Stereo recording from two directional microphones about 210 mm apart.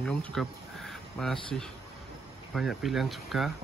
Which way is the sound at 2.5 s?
Centre (ahead or behind).